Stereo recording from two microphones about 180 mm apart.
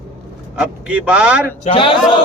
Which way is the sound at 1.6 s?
30° left (ahead or behind).